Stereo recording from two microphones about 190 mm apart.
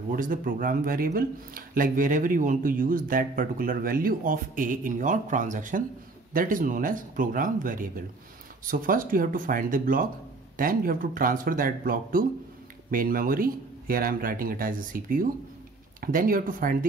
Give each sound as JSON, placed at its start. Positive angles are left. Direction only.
{"t": 0.1, "sound": "speech", "side_deg": -45}